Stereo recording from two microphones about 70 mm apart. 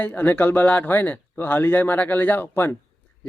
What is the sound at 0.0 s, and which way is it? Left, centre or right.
Speech, left.